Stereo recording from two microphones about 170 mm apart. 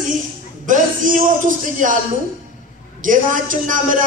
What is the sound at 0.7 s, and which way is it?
A man's voice, 50° right (ahead or behind).